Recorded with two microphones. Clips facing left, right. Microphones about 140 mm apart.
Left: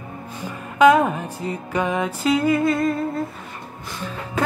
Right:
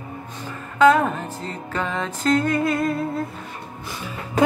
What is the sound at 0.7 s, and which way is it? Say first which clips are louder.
Music: left 1 dB; 15° left (ahead or behind).